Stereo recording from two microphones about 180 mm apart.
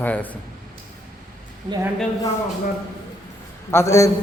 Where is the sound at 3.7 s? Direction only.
15° left (ahead or behind).